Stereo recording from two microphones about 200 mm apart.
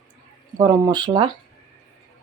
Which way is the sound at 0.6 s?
20° right (ahead or behind).